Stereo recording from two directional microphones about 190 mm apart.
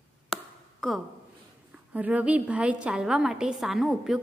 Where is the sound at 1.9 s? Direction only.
10° right (ahead or behind).